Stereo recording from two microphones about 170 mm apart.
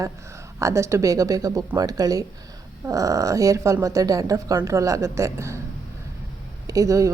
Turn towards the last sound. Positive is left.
turn(degrees=-20)  # may be behind; listen again after turning